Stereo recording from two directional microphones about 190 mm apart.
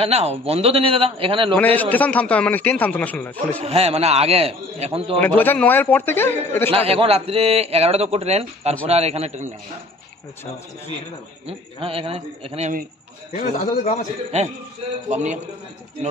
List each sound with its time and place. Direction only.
0.0 s a man's voice: 35° right (ahead or behind)
1.6 s a man's voice: 10° left (ahead or behind)
3.6 s a man's voice: 30° right (ahead or behind)
5.2 s a man's voice: 10° left (ahead or behind)
6.7 s a man's voice: 30° right (ahead or behind)
11.4 s a man's voice: 30° right (ahead or behind)
13.3 s a man's voice: 45° left (ahead or behind)
14.3 s a man's voice: 35° right (ahead or behind)